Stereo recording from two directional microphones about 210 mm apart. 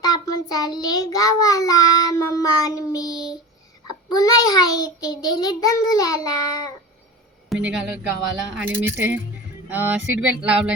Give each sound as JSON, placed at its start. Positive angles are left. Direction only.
{"t": 0.0, "sound": "child singing", "side_deg": 15}
{"t": 3.8, "sound": "a child's voice", "side_deg": 15}
{"t": 7.5, "sound": "speech", "side_deg": -5}